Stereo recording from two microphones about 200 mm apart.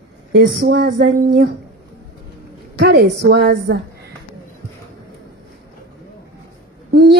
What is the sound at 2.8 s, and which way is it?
A woman's voice, 55° right (ahead or behind).